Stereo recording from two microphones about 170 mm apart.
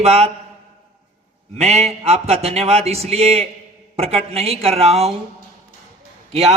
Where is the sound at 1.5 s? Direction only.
40° right (ahead or behind).